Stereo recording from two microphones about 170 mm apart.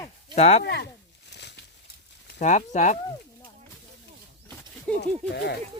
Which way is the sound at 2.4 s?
45° left (ahead or behind).